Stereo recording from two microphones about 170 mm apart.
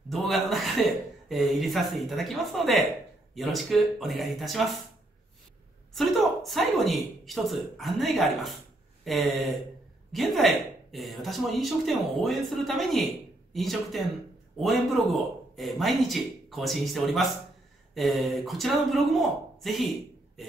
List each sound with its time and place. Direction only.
0.1 s speech: centre (ahead or behind)
5.9 s speech: centre (ahead or behind)